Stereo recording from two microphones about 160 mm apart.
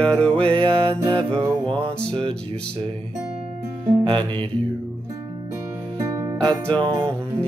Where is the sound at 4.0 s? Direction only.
30° right (ahead or behind).